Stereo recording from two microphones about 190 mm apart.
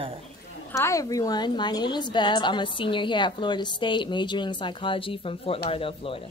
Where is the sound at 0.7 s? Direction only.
15° left (ahead or behind).